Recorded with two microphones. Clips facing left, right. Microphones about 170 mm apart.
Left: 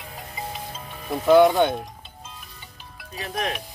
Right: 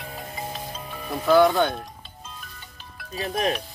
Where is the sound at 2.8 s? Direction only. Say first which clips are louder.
Right 4 dB; 15° left (ahead or behind).